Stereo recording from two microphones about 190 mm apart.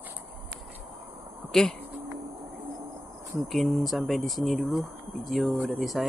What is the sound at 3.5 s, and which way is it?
Speech, centre (ahead or behind).